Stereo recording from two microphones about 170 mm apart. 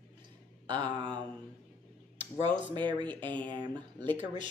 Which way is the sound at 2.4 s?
30° right (ahead or behind).